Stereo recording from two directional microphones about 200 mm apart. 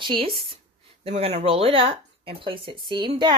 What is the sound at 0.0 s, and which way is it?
Speech, 25° right (ahead or behind).